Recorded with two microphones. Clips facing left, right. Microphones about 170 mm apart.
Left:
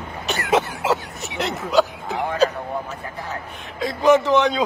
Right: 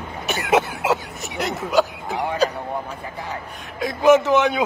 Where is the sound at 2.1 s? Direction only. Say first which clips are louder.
Left 1 dB; 15° right (ahead or behind).